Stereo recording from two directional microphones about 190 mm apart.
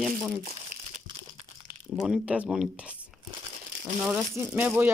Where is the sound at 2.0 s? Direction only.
5° right (ahead or behind).